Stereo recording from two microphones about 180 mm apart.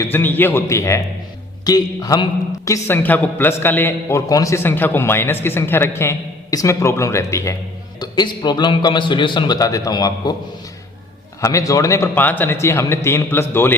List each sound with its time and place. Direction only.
0.0 s a woman's voice: 10° left (ahead or behind)
11.3 s a woman's voice: 20° left (ahead or behind)